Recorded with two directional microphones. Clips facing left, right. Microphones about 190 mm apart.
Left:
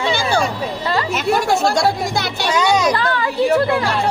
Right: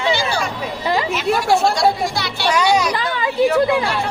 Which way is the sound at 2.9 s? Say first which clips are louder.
Left 2 dB; 15° right (ahead or behind).